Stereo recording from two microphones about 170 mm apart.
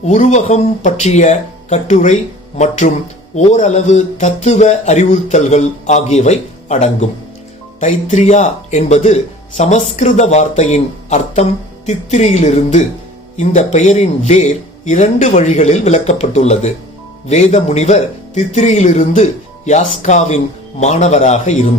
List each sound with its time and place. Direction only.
0.0 s speech: 45° left (ahead or behind)